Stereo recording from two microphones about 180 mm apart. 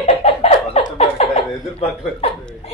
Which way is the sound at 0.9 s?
35° left (ahead or behind).